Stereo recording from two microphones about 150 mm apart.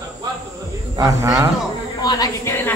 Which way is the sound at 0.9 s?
25° right (ahead or behind).